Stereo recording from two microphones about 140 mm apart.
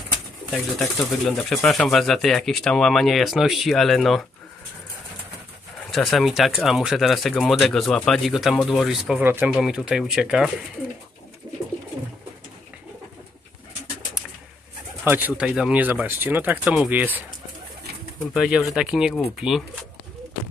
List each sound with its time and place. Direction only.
0.5 s speech: centre (ahead or behind)
5.9 s speech: centre (ahead or behind)
9.2 s speech: 15° right (ahead or behind)
9.5 s speech: 5° right (ahead or behind)
11.4 s bird: 30° right (ahead or behind)
15.0 s speech: 15° right (ahead or behind)
18.3 s speech: centre (ahead or behind)